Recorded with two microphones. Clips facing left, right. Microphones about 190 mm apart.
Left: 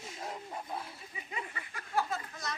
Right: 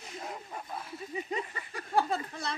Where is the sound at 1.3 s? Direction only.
30° right (ahead or behind).